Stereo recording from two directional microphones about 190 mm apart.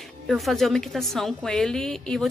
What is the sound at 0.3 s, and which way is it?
A woman's voice, centre (ahead or behind).